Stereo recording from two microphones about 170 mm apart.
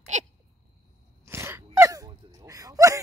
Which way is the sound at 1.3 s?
15° right (ahead or behind).